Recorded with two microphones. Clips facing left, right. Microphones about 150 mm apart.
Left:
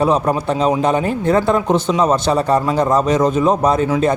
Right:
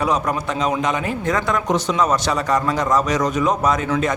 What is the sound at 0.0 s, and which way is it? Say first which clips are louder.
A man's voice: left 5 dB; 30° left (ahead or behind).